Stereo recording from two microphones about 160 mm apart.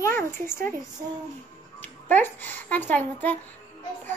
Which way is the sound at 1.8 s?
10° left (ahead or behind).